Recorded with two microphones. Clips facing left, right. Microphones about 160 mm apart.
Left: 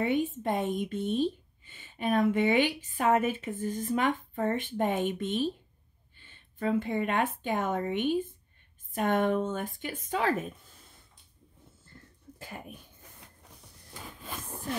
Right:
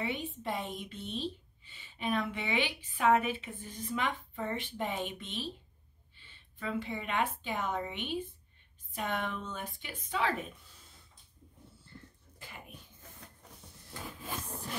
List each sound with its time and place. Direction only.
0.0 s a woman's voice: 50° left (ahead or behind)
12.4 s speech: 45° left (ahead or behind)